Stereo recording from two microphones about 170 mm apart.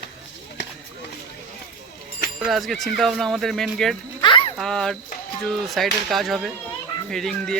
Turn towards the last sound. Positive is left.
turn(degrees=5)  # may be behind; listen again after turning